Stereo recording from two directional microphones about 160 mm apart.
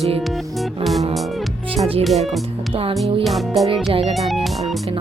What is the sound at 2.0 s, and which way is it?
Music, centre (ahead or behind).